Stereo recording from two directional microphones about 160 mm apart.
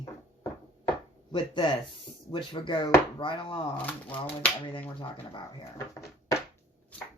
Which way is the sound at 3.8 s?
10° left (ahead or behind).